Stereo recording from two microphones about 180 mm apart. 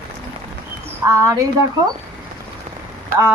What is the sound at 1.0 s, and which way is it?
Speech, 15° right (ahead or behind).